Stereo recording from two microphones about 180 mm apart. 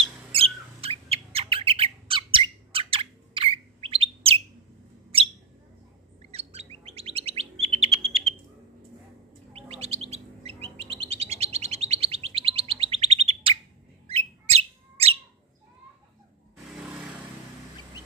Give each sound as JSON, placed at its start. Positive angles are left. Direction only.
{"t": 0.3, "sound": "bird", "side_deg": -30}
{"t": 6.3, "sound": "bird", "side_deg": -35}
{"t": 9.5, "sound": "bird", "side_deg": -35}